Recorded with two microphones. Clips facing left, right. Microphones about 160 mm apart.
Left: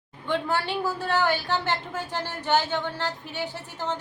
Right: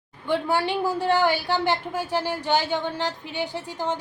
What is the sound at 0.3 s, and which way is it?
A woman's voice, 10° right (ahead or behind).